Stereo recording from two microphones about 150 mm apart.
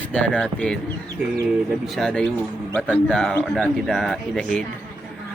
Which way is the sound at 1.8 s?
Centre (ahead or behind).